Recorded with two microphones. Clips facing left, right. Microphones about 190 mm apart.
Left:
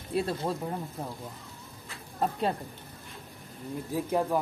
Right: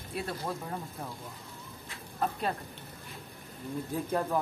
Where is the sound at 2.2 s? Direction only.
25° left (ahead or behind).